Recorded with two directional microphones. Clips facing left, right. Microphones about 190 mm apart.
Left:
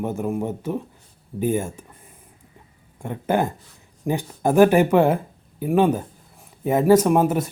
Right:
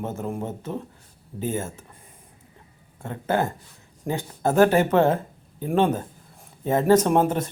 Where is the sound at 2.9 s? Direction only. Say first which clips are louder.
Left 2 dB; 15° left (ahead or behind).